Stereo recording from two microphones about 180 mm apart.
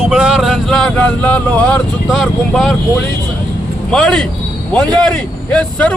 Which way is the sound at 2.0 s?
Centre (ahead or behind).